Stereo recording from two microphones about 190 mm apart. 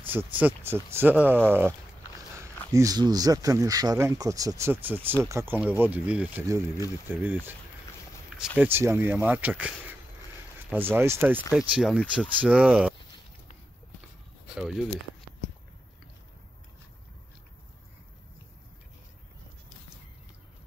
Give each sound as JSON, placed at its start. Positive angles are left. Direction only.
{"t": 0.1, "sound": "speech", "side_deg": -10}
{"t": 2.1, "sound": "dog", "side_deg": -15}
{"t": 2.7, "sound": "speech", "side_deg": -20}
{"t": 14.6, "sound": "speech", "side_deg": 0}